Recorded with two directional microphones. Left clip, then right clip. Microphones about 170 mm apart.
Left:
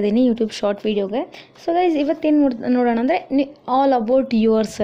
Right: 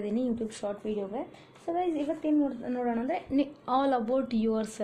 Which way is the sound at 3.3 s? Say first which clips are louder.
Left 9 dB; 25° left (ahead or behind).